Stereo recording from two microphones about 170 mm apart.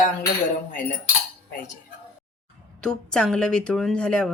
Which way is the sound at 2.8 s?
5° left (ahead or behind).